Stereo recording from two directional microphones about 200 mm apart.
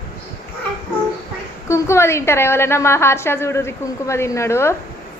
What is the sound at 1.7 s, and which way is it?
A woman's voice, 15° left (ahead or behind).